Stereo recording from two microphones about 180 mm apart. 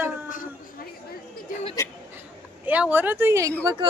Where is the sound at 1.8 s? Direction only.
15° left (ahead or behind).